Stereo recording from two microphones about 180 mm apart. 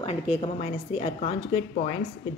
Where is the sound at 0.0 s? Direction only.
35° left (ahead or behind).